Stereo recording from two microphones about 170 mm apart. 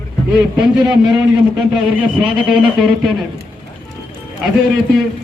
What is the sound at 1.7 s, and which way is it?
Speech, 5° right (ahead or behind).